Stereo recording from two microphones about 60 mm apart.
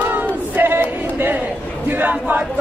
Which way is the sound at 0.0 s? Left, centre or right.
Right.